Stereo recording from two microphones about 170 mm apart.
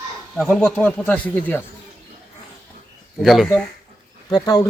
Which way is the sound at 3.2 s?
Centre (ahead or behind).